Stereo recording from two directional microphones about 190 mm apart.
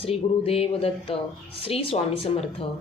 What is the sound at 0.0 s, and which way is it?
A woman's voice, 30° left (ahead or behind).